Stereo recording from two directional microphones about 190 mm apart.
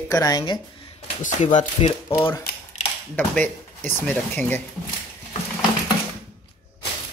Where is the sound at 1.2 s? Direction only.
40° left (ahead or behind).